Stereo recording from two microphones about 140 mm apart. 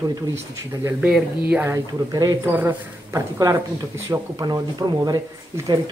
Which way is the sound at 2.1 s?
25° right (ahead or behind).